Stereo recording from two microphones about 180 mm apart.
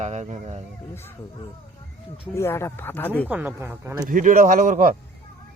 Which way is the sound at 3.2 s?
10° right (ahead or behind).